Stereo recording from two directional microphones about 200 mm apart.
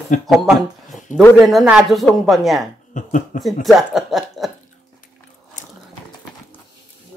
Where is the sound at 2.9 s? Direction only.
40° left (ahead or behind).